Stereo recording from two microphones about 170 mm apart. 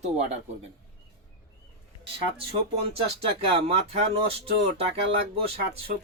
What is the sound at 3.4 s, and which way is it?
Speech, 35° right (ahead or behind).